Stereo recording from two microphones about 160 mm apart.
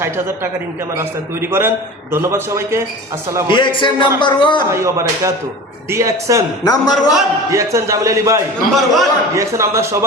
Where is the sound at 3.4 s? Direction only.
30° left (ahead or behind).